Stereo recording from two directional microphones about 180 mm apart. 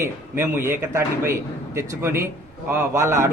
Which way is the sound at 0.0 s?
10° right (ahead or behind).